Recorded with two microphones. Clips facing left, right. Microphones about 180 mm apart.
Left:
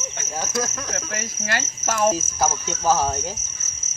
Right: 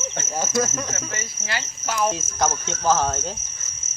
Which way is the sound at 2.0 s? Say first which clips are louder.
Left 3 dB; 5° left (ahead or behind).